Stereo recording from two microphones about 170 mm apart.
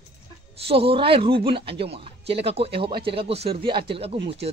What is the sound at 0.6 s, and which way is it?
Speech, 35° right (ahead or behind).